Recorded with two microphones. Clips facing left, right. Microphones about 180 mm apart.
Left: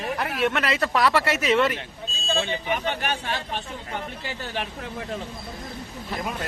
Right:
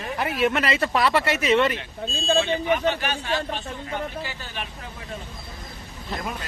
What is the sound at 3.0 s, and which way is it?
Speech, 55° left (ahead or behind).